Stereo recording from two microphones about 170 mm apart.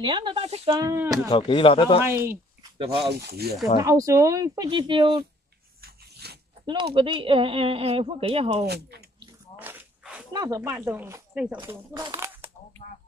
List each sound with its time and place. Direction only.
0.0 s speech: 30° right (ahead or behind)
0.7 s speech: 20° right (ahead or behind)
1.3 s speech: 30° left (ahead or behind)
2.0 s speech: 15° right (ahead or behind)
3.1 s speech: 70° right (ahead or behind)
3.8 s speech: 20° right (ahead or behind)
5.8 s a sound: 70° right (ahead or behind)
6.6 s speech: 30° right (ahead or behind)
8.6 s speech: 70° right (ahead or behind)
9.6 s a sound: 10° right (ahead or behind)
10.3 s speech: 20° right (ahead or behind)